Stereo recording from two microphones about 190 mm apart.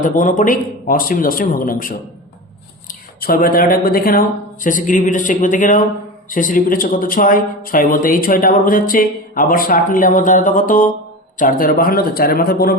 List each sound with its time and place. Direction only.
0.0 s speech: 45° left (ahead or behind)
3.2 s speech: 50° left (ahead or behind)